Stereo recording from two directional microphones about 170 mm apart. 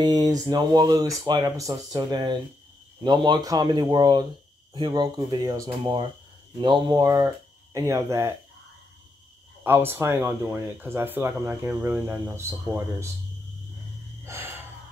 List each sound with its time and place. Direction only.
0.0 s speech: 25° right (ahead or behind)
9.6 s speech: 15° right (ahead or behind)
14.2 s gasp: 15° right (ahead or behind)